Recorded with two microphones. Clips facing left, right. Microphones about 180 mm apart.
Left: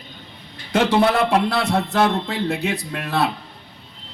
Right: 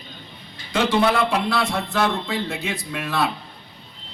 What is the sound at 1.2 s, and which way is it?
Speech, 60° left (ahead or behind).